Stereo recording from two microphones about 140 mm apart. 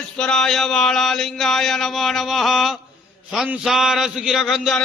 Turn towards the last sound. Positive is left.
turn(degrees=0)  # may be behind; listen again after turning